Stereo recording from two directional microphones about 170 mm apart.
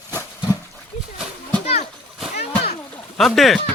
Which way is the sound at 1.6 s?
40° left (ahead or behind).